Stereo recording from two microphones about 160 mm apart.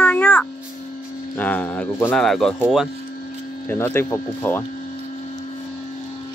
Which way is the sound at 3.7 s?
15° left (ahead or behind).